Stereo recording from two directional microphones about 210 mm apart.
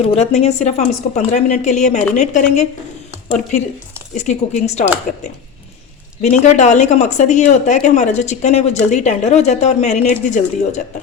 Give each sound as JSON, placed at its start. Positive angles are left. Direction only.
{"t": 0.0, "sound": "a woman's voice", "side_deg": 30}
{"t": 4.1, "sound": "a woman's voice", "side_deg": 35}